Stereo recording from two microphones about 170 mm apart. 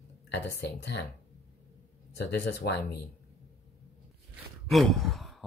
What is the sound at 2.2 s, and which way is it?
Speech, 85° left.